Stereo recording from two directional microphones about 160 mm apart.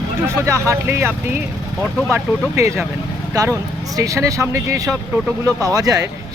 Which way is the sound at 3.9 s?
20° right (ahead or behind).